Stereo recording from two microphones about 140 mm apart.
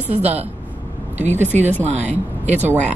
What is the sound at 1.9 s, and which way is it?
Speech, 55° right (ahead or behind).